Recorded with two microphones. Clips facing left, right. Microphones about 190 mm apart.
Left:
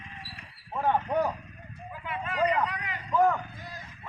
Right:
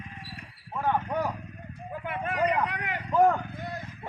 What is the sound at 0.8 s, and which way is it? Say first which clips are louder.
Speech: left 2 dB; 5° left (ahead or behind).